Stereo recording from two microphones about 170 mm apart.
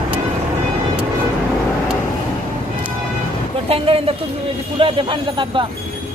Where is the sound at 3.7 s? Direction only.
35° right (ahead or behind).